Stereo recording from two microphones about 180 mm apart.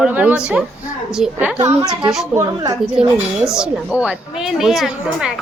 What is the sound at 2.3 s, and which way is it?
Speech, 15° right (ahead or behind).